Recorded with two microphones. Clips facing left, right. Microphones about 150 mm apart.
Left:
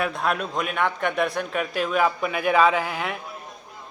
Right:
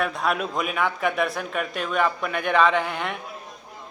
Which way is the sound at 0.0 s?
Centre (ahead or behind).